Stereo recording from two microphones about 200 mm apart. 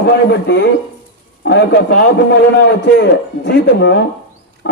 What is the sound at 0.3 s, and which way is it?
A man's voice, 60° left (ahead or behind).